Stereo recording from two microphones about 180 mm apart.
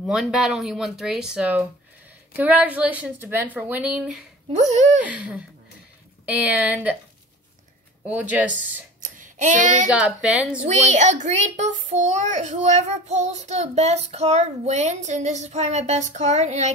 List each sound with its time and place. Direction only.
0.0 s a woman's voice: 5° right (ahead or behind)
4.5 s a child's voice: 40° right (ahead or behind)
5.0 s a woman's voice: 5° right (ahead or behind)
8.1 s a woman's voice: 10° right (ahead or behind)
9.0 s a sound: 45° right (ahead or behind)
9.8 s a woman's voice: 5° right (ahead or behind)
10.9 s a child's voice: 40° right (ahead or behind)